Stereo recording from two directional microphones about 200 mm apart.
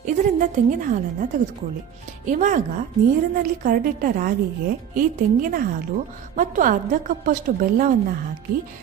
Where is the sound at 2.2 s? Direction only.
40° right (ahead or behind).